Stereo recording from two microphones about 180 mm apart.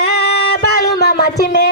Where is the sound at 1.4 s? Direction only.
70° left (ahead or behind).